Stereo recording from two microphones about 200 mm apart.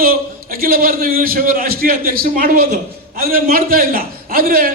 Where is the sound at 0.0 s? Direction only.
45° right (ahead or behind).